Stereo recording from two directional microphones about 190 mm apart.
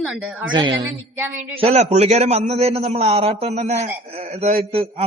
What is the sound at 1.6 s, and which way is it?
A man's voice, 35° right (ahead or behind).